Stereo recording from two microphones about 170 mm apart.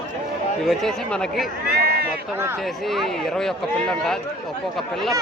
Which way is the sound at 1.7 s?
65° right (ahead or behind).